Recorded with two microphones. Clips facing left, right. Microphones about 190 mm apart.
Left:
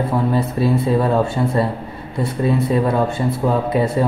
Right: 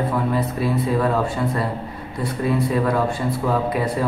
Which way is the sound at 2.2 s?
25° left (ahead or behind).